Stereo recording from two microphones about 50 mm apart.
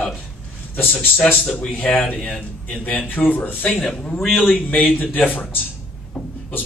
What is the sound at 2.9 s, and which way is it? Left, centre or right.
Speech, left.